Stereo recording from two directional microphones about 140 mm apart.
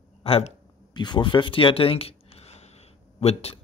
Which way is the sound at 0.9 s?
30° left (ahead or behind).